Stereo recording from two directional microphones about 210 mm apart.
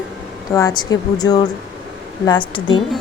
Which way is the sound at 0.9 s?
20° left (ahead or behind).